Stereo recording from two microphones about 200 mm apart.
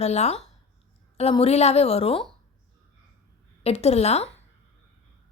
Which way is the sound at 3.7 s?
30° left (ahead or behind).